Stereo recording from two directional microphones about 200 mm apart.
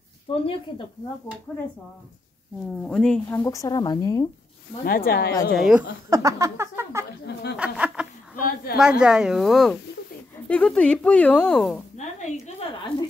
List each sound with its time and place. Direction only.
0.3 s speech: 25° left (ahead or behind)
1.5 s speech: centre (ahead or behind)
2.8 s speech: 5° left (ahead or behind)
3.3 s a woman's voice: 15° left (ahead or behind)
4.8 s speech: 45° left (ahead or behind)
5.5 s speech: centre (ahead or behind)
6.0 s a woman's voice: 15° right (ahead or behind)
8.4 s speech: 45° left (ahead or behind)
8.7 s speech: 5° right (ahead or behind)
12.2 s a sound: 35° left (ahead or behind)